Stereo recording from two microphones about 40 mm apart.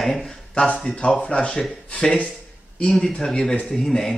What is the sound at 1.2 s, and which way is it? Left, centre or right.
Speech, left.